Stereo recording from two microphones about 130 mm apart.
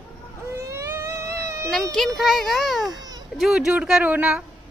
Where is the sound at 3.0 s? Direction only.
30° right (ahead or behind).